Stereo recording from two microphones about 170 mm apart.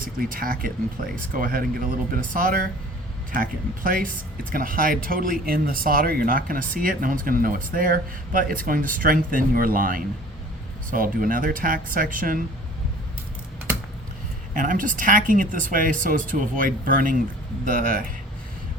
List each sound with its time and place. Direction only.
0.0 s speech: 55° right (ahead or behind)
14.5 s speech: 50° right (ahead or behind)